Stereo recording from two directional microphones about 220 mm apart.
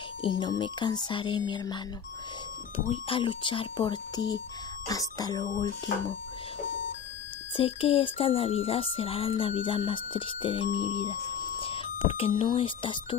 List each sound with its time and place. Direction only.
0.2 s speech: 20° left (ahead or behind)
2.9 s speech: 25° left (ahead or behind)
7.5 s speech: 25° left (ahead or behind)